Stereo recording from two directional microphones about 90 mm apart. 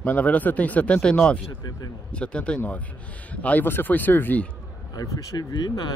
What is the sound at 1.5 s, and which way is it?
Speech, 50° left (ahead or behind).